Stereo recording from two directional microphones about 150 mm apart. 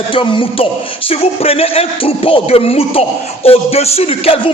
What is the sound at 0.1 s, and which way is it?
A man's voice, 35° left (ahead or behind).